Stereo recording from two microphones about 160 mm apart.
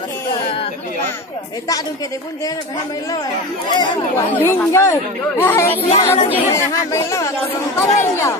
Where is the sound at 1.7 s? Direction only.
20° left (ahead or behind).